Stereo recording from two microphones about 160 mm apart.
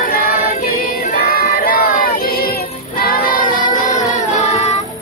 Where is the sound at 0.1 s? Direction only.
65° left (ahead or behind); by 4.8 s 45° left (ahead or behind).